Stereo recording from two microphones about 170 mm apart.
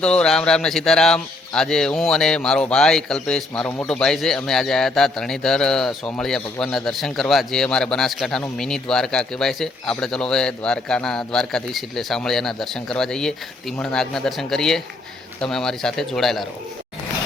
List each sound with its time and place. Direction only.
0.0 s speech: 5° left (ahead or behind)